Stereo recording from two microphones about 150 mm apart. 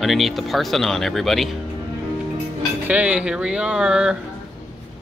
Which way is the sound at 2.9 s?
10° right (ahead or behind).